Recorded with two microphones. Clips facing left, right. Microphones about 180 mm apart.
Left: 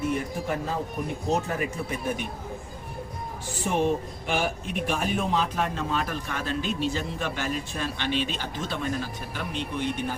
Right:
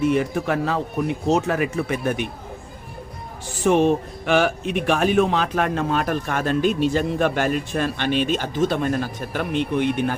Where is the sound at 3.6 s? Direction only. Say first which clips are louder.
Right 8 dB; 75° right (ahead or behind).